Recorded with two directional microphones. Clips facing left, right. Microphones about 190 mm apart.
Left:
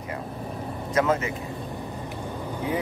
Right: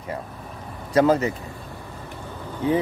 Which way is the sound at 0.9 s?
35° right (ahead or behind).